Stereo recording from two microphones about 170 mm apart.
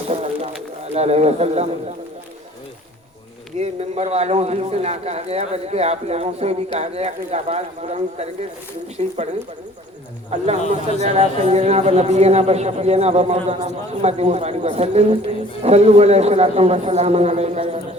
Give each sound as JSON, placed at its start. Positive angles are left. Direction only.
{"t": 0.9, "sound": "a man's voice", "side_deg": -40}
{"t": 3.6, "sound": "a man's voice", "side_deg": -40}